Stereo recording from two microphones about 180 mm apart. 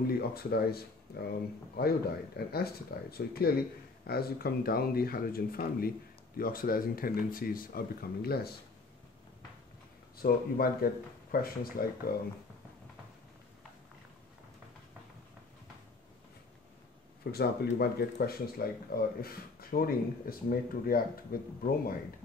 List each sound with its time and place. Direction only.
0.0 s speech: 60° left (ahead or behind)
10.1 s speech: 55° left (ahead or behind)
17.2 s speech: 60° left (ahead or behind)